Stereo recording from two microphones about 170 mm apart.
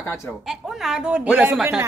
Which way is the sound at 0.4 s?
Centre (ahead or behind).